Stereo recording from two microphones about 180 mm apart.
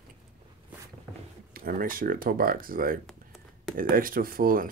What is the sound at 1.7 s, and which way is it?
Speech, 50° right (ahead or behind).